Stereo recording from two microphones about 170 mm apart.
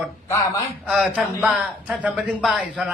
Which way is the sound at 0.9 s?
5° right (ahead or behind).